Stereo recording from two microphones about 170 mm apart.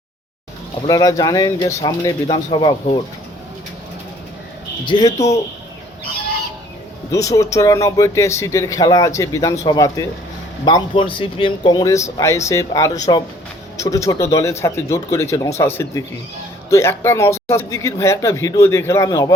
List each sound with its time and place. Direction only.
0.9 s speech: 20° left (ahead or behind)
4.9 s speech: 25° left (ahead or behind)
7.1 s speech: 20° left (ahead or behind)